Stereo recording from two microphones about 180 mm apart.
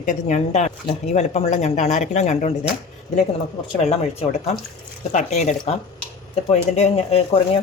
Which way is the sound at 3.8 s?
35° left (ahead or behind).